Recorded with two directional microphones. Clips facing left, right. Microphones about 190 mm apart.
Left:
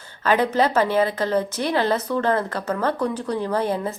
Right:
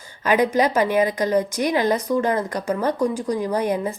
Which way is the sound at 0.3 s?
15° right (ahead or behind).